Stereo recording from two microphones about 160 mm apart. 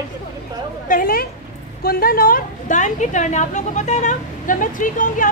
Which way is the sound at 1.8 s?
70° left (ahead or behind).